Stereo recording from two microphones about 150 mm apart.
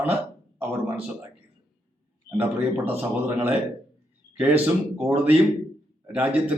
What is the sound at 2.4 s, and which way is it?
A man's voice, 10° right (ahead or behind).